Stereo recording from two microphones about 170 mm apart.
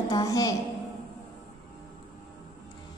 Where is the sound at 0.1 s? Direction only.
20° left (ahead or behind).